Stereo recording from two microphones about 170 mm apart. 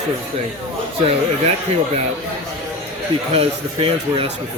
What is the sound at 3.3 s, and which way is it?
Speech, 35° right (ahead or behind).